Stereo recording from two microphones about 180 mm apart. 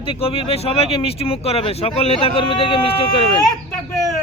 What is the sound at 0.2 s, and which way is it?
Speech, 30° left (ahead or behind).